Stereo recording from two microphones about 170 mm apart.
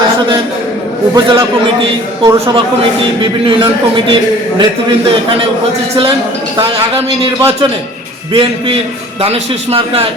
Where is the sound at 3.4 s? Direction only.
25° right (ahead or behind).